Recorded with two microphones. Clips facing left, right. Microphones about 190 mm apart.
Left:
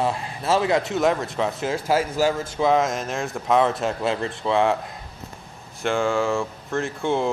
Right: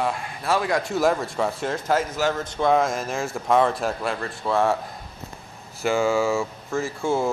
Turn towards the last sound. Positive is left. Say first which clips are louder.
# even
turn(degrees=0)  # may be behind; listen again after turning